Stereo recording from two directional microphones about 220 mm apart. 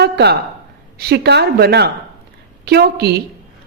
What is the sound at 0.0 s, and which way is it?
A woman's voice, 50° right (ahead or behind).